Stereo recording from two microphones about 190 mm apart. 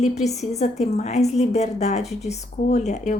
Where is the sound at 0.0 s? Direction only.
35° left (ahead or behind).